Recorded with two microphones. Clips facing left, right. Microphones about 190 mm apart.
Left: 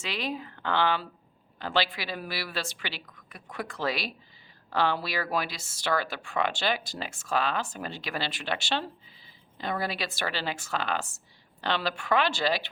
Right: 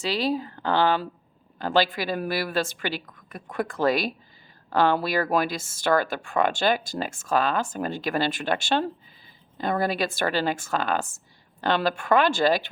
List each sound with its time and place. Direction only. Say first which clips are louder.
0.0 s speech: right 8 dB; 35° right (ahead or behind)